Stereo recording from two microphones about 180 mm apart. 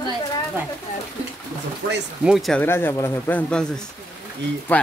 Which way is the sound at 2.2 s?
Centre (ahead or behind).